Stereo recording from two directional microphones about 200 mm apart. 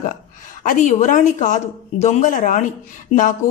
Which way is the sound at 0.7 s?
40° left (ahead or behind).